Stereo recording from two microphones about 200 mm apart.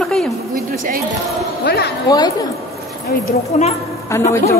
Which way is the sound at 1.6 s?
55° left (ahead or behind).